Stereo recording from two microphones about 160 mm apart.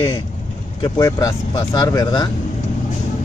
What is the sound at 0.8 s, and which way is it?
Speech, 25° left (ahead or behind).